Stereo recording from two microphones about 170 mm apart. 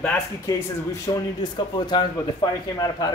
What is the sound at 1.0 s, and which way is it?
Speech, 25° left (ahead or behind).